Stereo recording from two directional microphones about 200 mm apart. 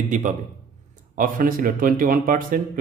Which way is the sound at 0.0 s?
40° right (ahead or behind).